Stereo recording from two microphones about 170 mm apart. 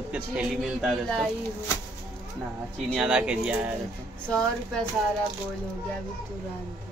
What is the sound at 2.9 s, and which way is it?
Speech, 5° right (ahead or behind).